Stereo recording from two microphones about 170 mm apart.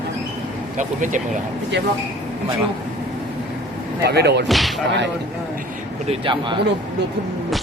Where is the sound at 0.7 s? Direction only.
50° right (ahead or behind).